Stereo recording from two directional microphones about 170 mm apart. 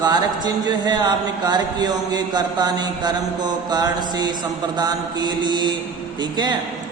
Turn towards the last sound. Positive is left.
turn(degrees=-25)  # may be behind; listen again after turning